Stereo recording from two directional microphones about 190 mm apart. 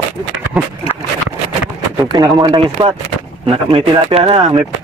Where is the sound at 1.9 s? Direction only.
20° right (ahead or behind).